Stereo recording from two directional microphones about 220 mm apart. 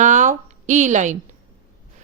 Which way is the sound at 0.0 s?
35° right (ahead or behind).